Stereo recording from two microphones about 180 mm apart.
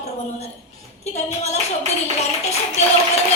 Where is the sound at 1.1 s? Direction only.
40° left (ahead or behind).